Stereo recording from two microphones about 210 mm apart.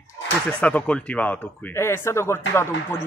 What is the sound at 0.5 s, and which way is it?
Speech, 5° left (ahead or behind).